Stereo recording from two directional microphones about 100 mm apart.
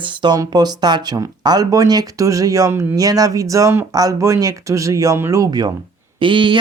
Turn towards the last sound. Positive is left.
turn(degrees=-55)  # may be behind; listen again after turning